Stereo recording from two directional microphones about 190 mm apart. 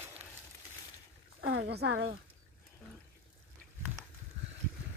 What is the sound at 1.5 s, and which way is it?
Speech, 60° right (ahead or behind).